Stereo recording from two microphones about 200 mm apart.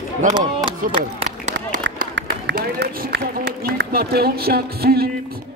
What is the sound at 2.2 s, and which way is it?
Speech, 50° right (ahead or behind).